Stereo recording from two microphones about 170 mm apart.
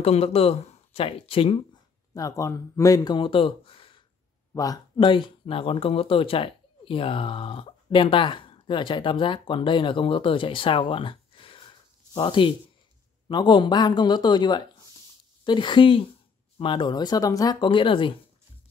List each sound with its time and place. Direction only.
0.0 s speech: 35° left (ahead or behind)
2.1 s speech: 20° left (ahead or behind)